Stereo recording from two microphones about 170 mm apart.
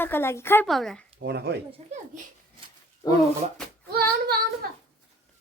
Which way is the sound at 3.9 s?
65° right (ahead or behind).